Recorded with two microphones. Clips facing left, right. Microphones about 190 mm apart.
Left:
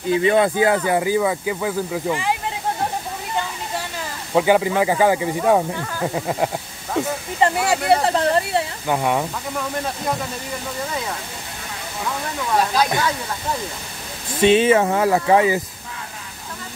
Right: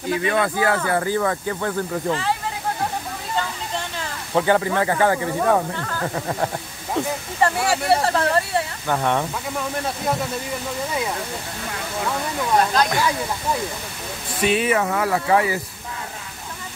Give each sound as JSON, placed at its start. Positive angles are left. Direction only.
{"t": 0.1, "sound": "speech", "side_deg": 25}
{"t": 4.3, "sound": "speech", "side_deg": 10}
{"t": 14.4, "sound": "speech", "side_deg": 25}